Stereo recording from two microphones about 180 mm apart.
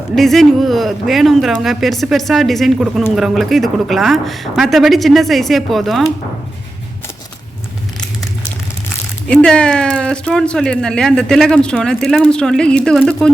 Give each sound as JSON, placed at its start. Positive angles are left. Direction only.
{"t": 0.2, "sound": "speech", "side_deg": 0}
{"t": 9.2, "sound": "speech", "side_deg": 5}